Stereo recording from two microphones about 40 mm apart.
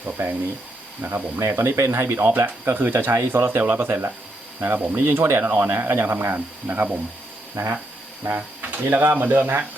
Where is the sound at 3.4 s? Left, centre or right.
Right.